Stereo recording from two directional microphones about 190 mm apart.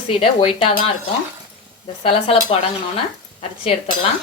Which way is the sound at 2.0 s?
30° left (ahead or behind).